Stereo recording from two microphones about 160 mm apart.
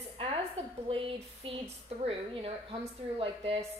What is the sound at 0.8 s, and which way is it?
A woman's voice, 35° right (ahead or behind).